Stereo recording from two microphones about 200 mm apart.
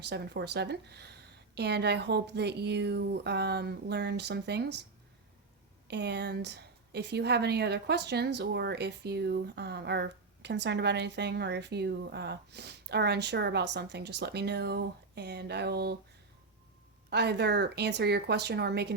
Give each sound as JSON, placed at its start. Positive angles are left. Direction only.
{"t": 0.0, "sound": "a woman's voice", "side_deg": -55}
{"t": 5.9, "sound": "a woman's voice", "side_deg": -60}
{"t": 17.1, "sound": "a woman's voice", "side_deg": -55}